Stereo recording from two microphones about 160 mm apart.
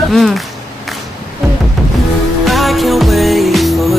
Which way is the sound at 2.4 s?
Centre (ahead or behind).